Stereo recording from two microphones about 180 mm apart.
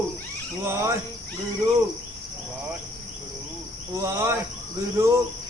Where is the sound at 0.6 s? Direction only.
15° right (ahead or behind).